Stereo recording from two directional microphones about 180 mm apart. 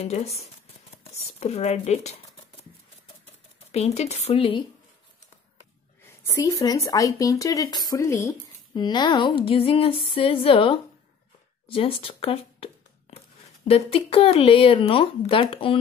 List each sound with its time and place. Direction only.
0.0 s speech: 35° left (ahead or behind)
3.7 s speech: 35° left (ahead or behind)
6.3 s speech: 15° left (ahead or behind)
11.6 s a sound: 30° left (ahead or behind)
13.7 s speech: 35° left (ahead or behind)